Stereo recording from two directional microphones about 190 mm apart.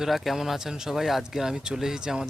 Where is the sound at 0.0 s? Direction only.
Centre (ahead or behind).